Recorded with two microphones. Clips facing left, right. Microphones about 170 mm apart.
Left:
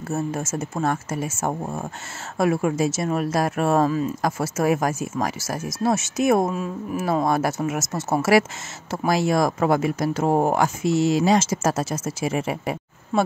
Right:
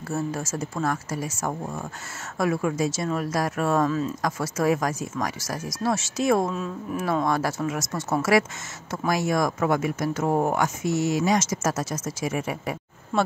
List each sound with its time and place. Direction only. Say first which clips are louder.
0.1 s speech: left 2 dB; 25° left (ahead or behind)
6.5 s speech: left 2 dB; 5° left (ahead or behind)
7.1 s speech: left 3 dB; 25° left (ahead or behind)